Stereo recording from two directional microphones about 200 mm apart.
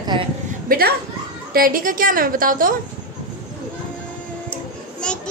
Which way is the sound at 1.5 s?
45° right (ahead or behind).